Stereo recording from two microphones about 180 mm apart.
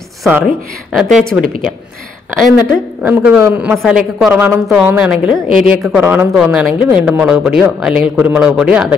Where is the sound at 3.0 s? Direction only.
10° right (ahead or behind).